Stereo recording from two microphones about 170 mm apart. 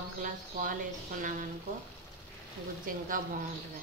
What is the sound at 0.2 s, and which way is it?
Speech, 50° right (ahead or behind).